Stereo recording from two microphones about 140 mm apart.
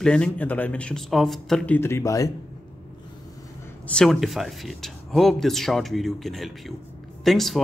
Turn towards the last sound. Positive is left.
turn(degrees=0)  # may be behind; listen again after turning